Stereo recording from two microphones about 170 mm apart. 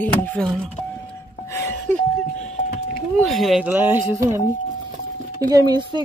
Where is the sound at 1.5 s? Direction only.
15° left (ahead or behind).